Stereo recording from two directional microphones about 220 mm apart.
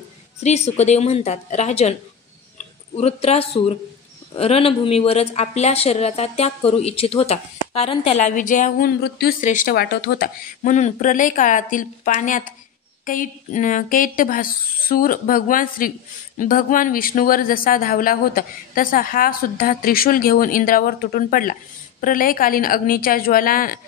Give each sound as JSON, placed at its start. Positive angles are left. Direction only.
{"t": 0.4, "sound": "a woman's voice", "side_deg": 30}
{"t": 3.0, "sound": "a woman's voice", "side_deg": 30}